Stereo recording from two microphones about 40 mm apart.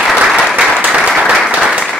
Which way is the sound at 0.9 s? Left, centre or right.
Centre.